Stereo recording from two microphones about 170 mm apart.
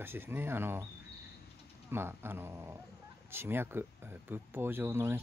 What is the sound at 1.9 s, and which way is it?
Speech, 15° right (ahead or behind).